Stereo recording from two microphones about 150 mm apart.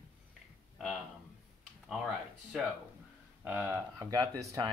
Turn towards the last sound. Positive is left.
turn(degrees=-20)  # may be behind; listen again after turning